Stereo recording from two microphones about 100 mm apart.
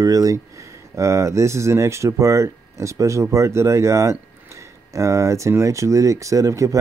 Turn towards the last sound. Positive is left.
turn(degrees=-35)  # may be behind; listen again after turning